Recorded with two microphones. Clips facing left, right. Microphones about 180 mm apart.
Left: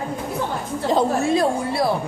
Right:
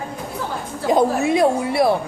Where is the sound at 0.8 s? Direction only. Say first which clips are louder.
Right 2 dB; 15° right (ahead or behind).